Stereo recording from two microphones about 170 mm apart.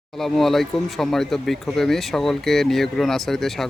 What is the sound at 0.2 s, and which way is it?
Speech, centre (ahead or behind).